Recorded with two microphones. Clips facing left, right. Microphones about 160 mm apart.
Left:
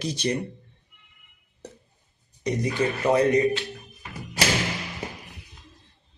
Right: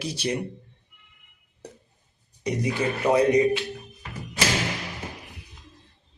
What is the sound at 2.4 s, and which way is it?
Speech, 10° right (ahead or behind).